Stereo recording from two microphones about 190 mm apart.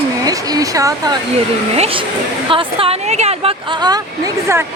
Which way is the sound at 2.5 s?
30° right (ahead or behind).